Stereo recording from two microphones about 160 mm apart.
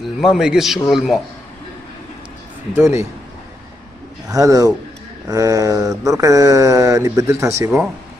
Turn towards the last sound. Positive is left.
turn(degrees=-20)  # may be behind; listen again after turning